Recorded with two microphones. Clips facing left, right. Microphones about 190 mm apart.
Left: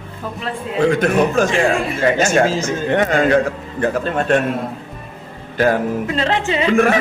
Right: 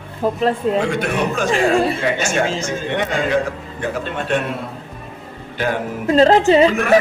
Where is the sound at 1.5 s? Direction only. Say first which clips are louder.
Right 1 dB; 35° right (ahead or behind).